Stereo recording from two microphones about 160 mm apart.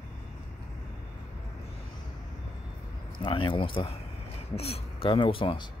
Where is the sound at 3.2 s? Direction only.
35° left (ahead or behind).